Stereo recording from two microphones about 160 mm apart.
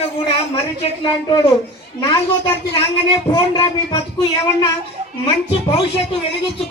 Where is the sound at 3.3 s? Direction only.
30° left (ahead or behind).